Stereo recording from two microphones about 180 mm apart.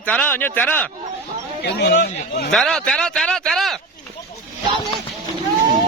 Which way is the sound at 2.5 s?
Centre (ahead or behind).